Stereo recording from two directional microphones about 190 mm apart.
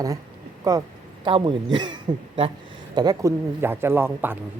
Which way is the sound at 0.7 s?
20° right (ahead or behind).